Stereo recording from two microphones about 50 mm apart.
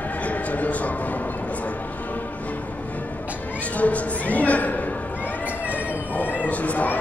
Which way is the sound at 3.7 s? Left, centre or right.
Left.